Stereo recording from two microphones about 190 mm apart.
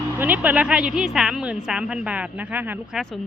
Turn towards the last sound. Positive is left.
turn(degrees=0)  # may be behind; listen again after turning